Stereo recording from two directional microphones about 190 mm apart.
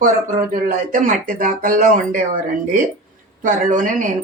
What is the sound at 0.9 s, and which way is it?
Speech, 45° right (ahead or behind).